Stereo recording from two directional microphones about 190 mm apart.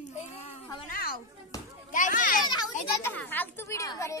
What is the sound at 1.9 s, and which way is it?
Children playing, 45° left (ahead or behind).